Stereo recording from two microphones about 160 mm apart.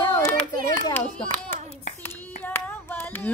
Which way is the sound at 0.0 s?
15° left (ahead or behind).